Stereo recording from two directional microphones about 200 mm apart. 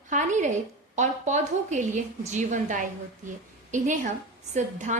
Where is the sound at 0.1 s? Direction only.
40° right (ahead or behind).